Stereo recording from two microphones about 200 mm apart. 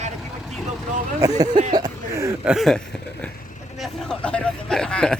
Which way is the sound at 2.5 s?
Centre (ahead or behind).